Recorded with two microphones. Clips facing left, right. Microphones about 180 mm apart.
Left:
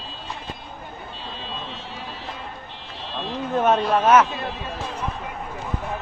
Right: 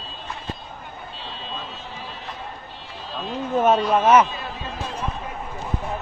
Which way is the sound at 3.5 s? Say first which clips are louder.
Right 1 dB; 10° right (ahead or behind).